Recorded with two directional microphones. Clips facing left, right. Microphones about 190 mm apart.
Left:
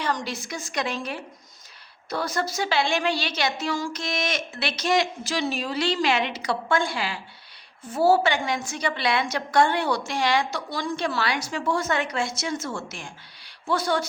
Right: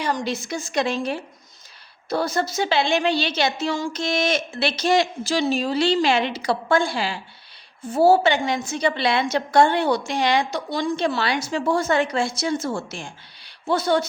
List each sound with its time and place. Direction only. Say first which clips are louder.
0.0 s a woman's voice: right 3 dB; 10° right (ahead or behind)
0.3 s a woman's voice: right 6 dB; 25° right (ahead or behind)